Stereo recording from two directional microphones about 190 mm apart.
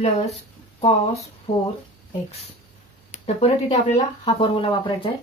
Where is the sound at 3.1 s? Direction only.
35° left (ahead or behind).